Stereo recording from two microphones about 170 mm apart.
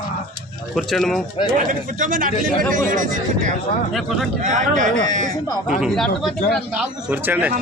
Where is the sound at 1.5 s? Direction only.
50° right (ahead or behind).